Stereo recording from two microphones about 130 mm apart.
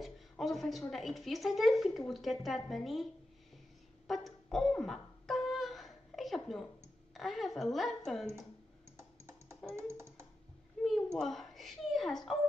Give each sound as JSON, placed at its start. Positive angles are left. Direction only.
{"t": 0.0, "sound": "a woman's voice", "side_deg": 0}
{"t": 4.1, "sound": "a sound", "side_deg": 0}
{"t": 7.2, "sound": "a woman's voice", "side_deg": 0}
{"t": 8.9, "sound": "computer keyboard", "side_deg": -20}
{"t": 11.1, "sound": "speech", "side_deg": 0}